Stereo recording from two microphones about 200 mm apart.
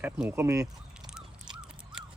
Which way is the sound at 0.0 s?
10° right (ahead or behind).